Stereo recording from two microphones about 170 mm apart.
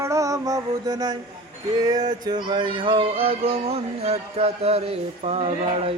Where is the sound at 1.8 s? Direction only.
25° right (ahead or behind).